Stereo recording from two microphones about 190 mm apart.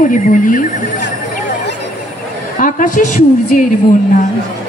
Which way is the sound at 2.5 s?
45° left (ahead or behind).